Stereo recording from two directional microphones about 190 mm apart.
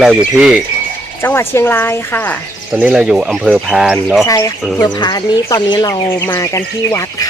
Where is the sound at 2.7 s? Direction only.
5° right (ahead or behind).